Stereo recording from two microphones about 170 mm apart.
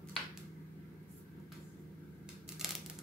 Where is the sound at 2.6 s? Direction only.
Centre (ahead or behind).